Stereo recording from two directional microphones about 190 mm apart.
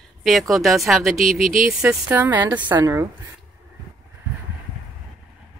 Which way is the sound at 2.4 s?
20° right (ahead or behind).